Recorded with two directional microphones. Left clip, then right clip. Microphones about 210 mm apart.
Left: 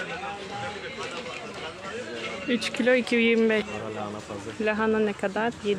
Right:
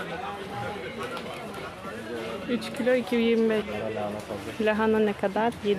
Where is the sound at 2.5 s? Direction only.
45° left (ahead or behind).